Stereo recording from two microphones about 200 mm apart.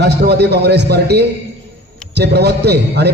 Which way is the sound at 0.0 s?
55° right (ahead or behind).